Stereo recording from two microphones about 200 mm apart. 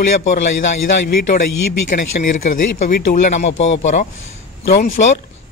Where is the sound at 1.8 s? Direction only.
40° left (ahead or behind).